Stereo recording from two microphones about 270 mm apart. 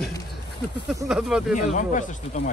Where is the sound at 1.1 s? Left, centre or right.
Centre.